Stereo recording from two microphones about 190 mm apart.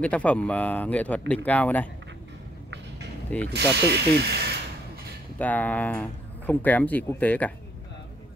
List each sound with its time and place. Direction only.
0.0 s speech: 5° left (ahead or behind)
3.3 s speech: 10° left (ahead or behind)
3.7 s speech: 60° right (ahead or behind)
5.4 s speech: 10° left (ahead or behind)